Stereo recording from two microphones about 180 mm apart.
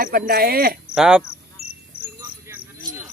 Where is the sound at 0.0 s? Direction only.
55° right (ahead or behind).